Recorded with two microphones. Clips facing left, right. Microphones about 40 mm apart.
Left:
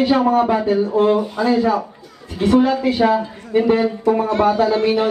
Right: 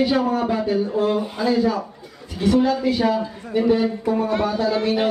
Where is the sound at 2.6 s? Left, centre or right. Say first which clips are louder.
Left 3 dB; left.